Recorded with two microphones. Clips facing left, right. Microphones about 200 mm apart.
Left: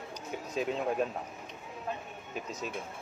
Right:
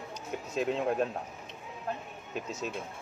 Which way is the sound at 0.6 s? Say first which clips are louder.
Right 2 dB; centre (ahead or behind).